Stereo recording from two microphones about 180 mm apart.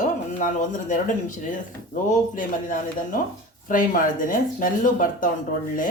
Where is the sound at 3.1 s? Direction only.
50° left (ahead or behind).